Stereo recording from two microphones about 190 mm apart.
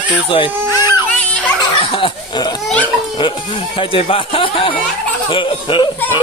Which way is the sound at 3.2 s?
25° left (ahead or behind).